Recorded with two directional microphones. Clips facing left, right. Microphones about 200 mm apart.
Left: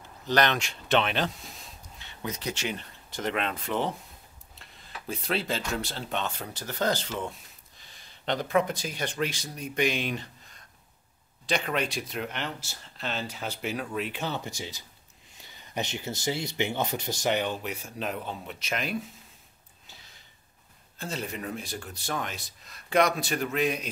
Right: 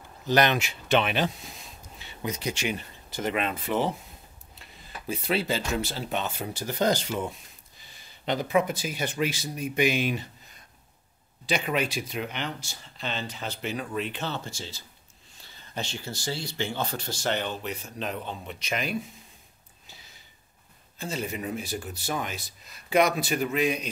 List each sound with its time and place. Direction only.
0.3 s speech: 10° right (ahead or behind)
11.4 s speech: 5° right (ahead or behind)
21.0 s speech: centre (ahead or behind)